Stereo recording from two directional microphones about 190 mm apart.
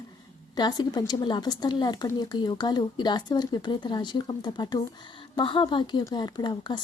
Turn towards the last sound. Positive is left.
turn(degrees=20)  # may be behind; listen again after turning